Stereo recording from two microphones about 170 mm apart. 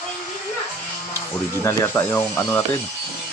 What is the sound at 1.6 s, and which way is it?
Speech, 15° left (ahead or behind).